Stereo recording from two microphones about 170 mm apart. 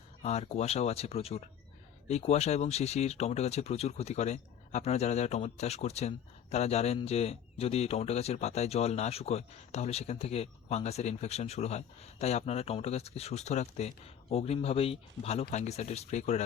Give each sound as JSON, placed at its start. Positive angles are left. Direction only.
{"t": 0.2, "sound": "speech", "side_deg": 40}